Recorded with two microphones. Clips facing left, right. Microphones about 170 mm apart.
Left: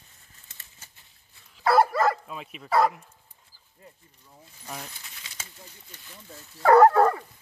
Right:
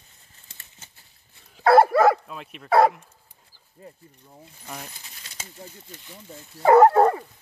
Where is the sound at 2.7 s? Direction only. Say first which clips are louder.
Right 5 dB; 65° right (ahead or behind).